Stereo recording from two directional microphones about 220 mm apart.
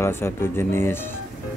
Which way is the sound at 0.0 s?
10° left (ahead or behind).